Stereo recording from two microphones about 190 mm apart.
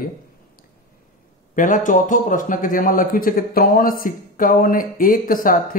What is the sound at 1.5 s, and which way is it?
A man's voice, 45° left (ahead or behind).